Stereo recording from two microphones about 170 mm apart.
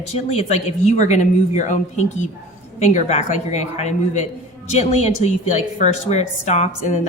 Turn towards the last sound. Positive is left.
turn(degrees=40)  # may be behind; listen again after turning